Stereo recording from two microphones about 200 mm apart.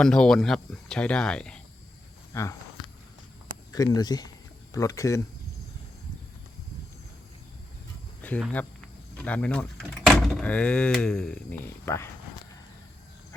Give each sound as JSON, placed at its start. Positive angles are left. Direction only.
{"t": 0.0, "sound": "speech", "side_deg": 5}
{"t": 2.3, "sound": "speech", "side_deg": 15}
{"t": 3.7, "sound": "speech", "side_deg": 20}
{"t": 8.2, "sound": "speech", "side_deg": 5}